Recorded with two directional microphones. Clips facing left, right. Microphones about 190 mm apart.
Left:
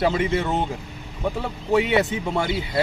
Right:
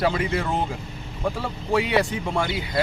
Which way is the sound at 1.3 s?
20° left (ahead or behind).